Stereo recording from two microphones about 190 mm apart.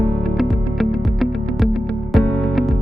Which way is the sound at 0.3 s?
Centre (ahead or behind).